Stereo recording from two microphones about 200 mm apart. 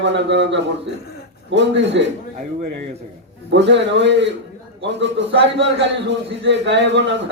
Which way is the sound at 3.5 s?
60° right (ahead or behind).